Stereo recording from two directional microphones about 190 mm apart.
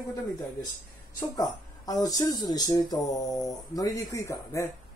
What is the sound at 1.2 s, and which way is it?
Speech, 20° left (ahead or behind).